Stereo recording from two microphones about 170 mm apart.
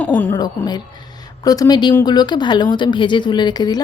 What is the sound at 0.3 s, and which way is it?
A woman's voice, 25° left (ahead or behind).